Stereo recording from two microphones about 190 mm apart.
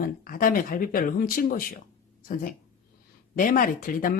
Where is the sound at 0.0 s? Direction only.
45° left (ahead or behind).